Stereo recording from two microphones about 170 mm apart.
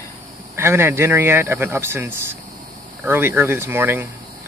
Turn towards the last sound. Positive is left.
turn(degrees=-15)  # may be behind; listen again after turning